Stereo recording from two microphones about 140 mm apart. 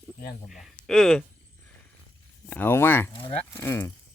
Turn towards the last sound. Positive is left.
turn(degrees=20)  # may be behind; listen again after turning